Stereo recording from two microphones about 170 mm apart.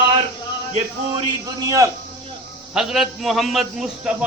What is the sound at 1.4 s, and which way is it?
Speech, 20° right (ahead or behind).